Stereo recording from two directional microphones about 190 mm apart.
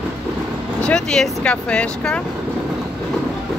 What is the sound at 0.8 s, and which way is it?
Speech, 5° left (ahead or behind).